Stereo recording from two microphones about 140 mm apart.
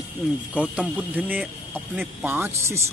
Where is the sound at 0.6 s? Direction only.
10° right (ahead or behind).